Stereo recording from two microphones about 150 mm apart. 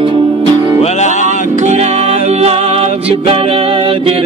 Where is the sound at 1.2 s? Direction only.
60° left (ahead or behind).